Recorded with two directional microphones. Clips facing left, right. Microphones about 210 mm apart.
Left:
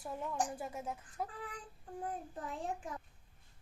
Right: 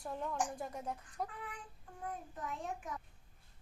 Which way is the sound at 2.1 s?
30° left (ahead or behind).